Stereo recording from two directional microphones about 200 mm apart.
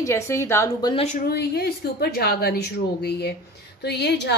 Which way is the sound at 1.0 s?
45° left (ahead or behind).